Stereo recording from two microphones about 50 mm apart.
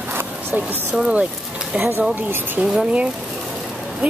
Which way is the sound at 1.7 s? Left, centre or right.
Right.